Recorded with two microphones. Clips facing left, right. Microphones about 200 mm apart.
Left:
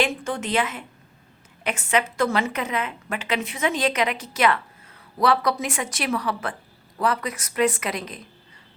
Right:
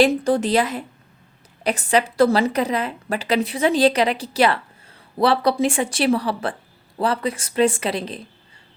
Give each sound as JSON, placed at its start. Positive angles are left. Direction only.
{"t": 0.0, "sound": "a woman's voice", "side_deg": -35}